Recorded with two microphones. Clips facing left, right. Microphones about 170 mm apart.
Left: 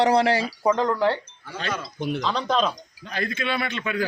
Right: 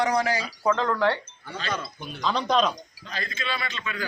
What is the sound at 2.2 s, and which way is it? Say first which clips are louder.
Speech: right 2 dB; centre (ahead or behind).